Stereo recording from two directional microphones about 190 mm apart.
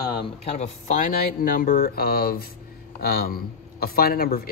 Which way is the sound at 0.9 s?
45° left (ahead or behind).